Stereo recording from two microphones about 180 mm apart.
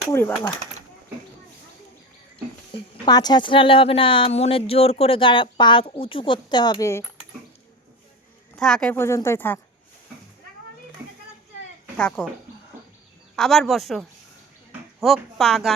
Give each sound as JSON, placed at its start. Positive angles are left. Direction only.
{"t": 0.1, "sound": "speech", "side_deg": 10}
{"t": 3.1, "sound": "a woman's voice", "side_deg": 20}
{"t": 8.5, "sound": "speech", "side_deg": 5}
{"t": 11.9, "sound": "speech", "side_deg": 5}
{"t": 13.3, "sound": "speech", "side_deg": 0}